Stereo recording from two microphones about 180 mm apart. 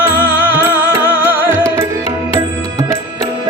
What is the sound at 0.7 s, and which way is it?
Music, 10° left (ahead or behind).